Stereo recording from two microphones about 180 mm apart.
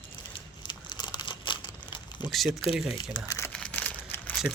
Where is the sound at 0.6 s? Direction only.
25° left (ahead or behind).